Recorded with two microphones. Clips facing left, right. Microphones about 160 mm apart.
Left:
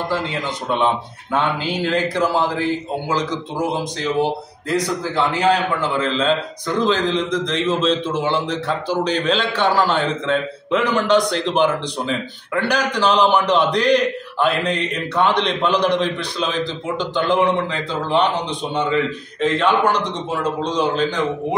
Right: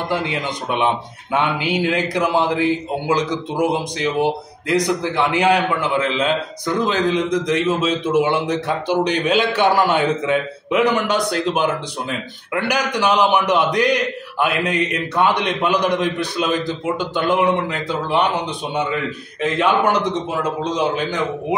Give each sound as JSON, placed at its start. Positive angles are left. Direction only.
{"t": 0.1, "sound": "a man's voice", "side_deg": -15}